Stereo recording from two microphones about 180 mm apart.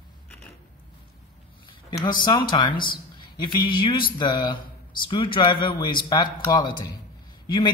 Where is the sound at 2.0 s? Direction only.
25° left (ahead or behind).